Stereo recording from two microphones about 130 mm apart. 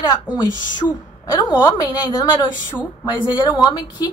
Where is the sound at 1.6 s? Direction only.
30° left (ahead or behind).